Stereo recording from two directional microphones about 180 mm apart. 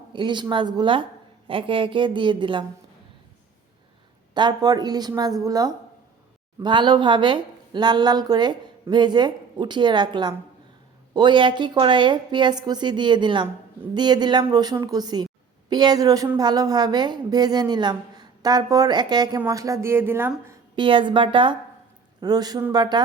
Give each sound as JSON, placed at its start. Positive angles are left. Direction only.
{"t": 0.1, "sound": "a woman's voice", "side_deg": -25}
{"t": 4.4, "sound": "a woman's voice", "side_deg": -25}
{"t": 20.7, "sound": "a woman's voice", "side_deg": -25}